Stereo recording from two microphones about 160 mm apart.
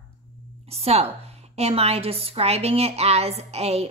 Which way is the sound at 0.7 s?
40° right (ahead or behind).